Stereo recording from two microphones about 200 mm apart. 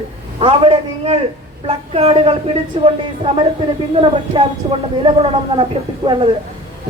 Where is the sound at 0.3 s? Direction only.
30° right (ahead or behind).